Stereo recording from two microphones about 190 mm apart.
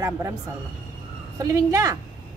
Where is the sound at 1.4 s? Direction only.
15° right (ahead or behind).